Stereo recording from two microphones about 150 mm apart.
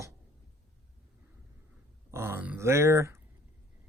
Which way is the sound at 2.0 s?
15° right (ahead or behind).